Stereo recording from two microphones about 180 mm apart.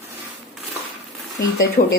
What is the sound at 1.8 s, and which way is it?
Speech, 50° left (ahead or behind).